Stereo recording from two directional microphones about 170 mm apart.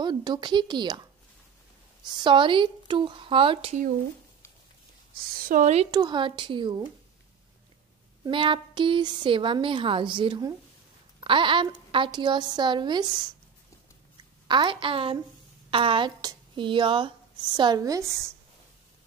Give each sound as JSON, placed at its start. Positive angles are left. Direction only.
{"t": 0.0, "sound": "a woman's voice", "side_deg": -25}
{"t": 2.0, "sound": "a woman's voice", "side_deg": -30}
{"t": 5.4, "sound": "a woman's voice", "side_deg": -50}
{"t": 5.9, "sound": "a woman's voice", "side_deg": -25}
{"t": 8.3, "sound": "a woman's voice", "side_deg": -30}
{"t": 14.5, "sound": "a woman's voice", "side_deg": -30}